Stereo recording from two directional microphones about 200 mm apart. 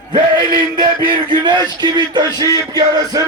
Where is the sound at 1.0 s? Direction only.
25° right (ahead or behind).